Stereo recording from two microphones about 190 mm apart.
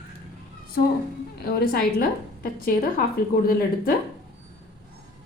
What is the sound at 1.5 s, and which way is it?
Speech, 50° left (ahead or behind).